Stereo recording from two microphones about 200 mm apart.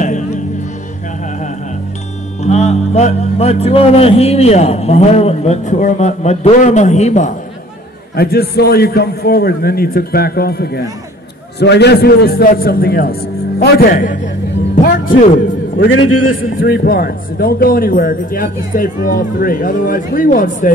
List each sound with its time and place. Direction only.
2.4 s speech: 35° left (ahead or behind)
8.2 s a man's voice: 50° left (ahead or behind)
15.8 s a man's voice: 70° left (ahead or behind)
16.3 s a man's voice: 50° left (ahead or behind)